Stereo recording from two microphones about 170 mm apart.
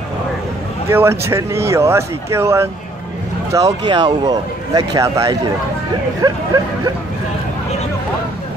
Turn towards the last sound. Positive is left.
turn(degrees=-25)  # may be behind; listen again after turning